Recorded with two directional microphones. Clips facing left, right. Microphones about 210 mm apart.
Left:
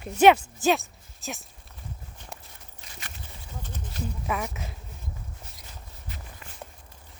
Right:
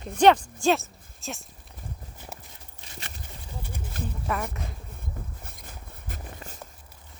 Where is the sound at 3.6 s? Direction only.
10° right (ahead or behind).